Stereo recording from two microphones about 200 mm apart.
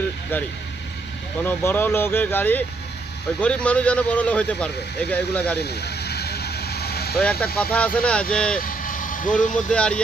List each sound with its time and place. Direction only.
1.4 s speech: 10° left (ahead or behind)
5.6 s vehicle: 55° left (ahead or behind)
7.2 s speech: 5° left (ahead or behind)
8.5 s vehicle: 45° left (ahead or behind)
9.7 s speech: 5° left (ahead or behind)